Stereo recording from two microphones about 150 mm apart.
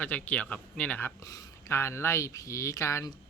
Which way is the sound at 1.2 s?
25° left (ahead or behind).